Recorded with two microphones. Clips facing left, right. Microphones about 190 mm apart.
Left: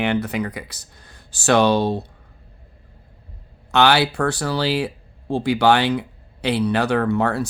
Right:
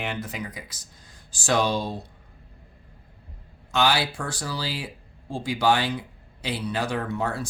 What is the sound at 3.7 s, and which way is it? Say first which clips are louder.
Speech: left 7 dB; 65° left (ahead or behind).